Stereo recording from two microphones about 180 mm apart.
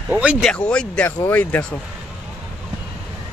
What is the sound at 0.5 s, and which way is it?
A man's voice, 5° left (ahead or behind).